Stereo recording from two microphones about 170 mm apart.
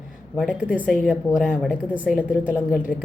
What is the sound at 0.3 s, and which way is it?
A woman's voice, 5° right (ahead or behind).